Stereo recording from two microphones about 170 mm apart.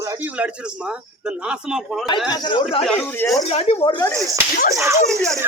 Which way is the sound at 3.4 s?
35° left (ahead or behind).